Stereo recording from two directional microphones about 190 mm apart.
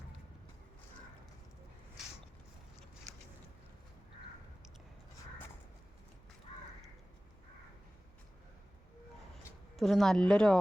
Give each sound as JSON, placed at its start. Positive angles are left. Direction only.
{"t": 6.5, "sound": "crow", "side_deg": 35}
{"t": 9.7, "sound": "a woman's voice", "side_deg": 0}